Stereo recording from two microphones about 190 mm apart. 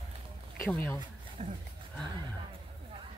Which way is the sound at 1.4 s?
35° right (ahead or behind).